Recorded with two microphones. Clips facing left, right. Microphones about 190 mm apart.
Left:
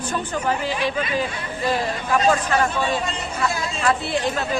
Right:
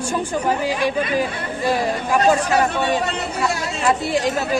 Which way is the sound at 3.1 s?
70° right (ahead or behind).